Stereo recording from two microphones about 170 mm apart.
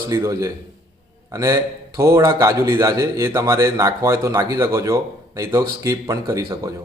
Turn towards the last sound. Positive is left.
turn(degrees=-20)  # may be behind; listen again after turning